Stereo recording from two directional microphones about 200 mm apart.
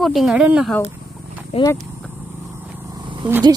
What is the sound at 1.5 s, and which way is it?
Speech, 30° left (ahead or behind).